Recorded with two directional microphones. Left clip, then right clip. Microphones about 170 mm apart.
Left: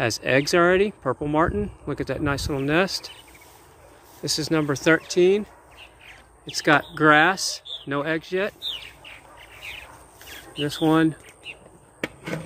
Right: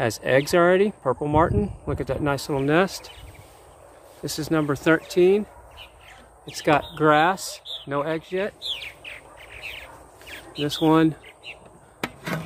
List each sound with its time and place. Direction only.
0.0 s speech: 5° left (ahead or behind)
4.2 s speech: 10° left (ahead or behind)
6.5 s speech: 15° left (ahead or behind)
8.6 s bird: 90° right
10.6 s speech: 5° left (ahead or behind)